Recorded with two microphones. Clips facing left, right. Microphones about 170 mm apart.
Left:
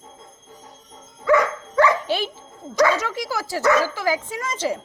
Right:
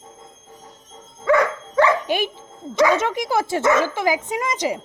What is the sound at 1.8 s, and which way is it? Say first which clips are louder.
Dog: right 1 dB; 15° right (ahead or behind).